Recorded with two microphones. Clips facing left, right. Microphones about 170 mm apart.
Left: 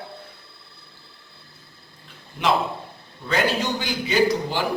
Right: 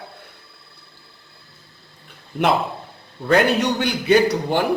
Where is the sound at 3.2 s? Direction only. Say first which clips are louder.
Right 6 dB; 55° right (ahead or behind).